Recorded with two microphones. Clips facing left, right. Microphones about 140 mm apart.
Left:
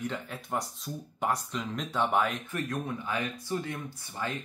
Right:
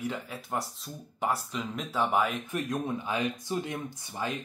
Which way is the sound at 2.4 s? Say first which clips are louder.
Right 2 dB; 15° right (ahead or behind).